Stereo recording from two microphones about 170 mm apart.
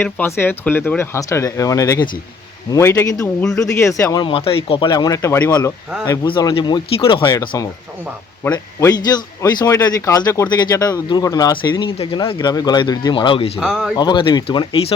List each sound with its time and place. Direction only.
0.0 s speech: 10° left (ahead or behind); by 13.5 s 30° left (ahead or behind)
13.6 s speech: centre (ahead or behind)
13.9 s speech: 25° left (ahead or behind)